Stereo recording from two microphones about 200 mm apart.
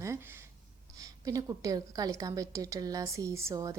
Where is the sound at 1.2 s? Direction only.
15° right (ahead or behind).